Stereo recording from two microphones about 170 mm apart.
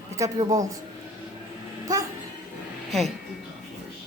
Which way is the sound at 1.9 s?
20° right (ahead or behind).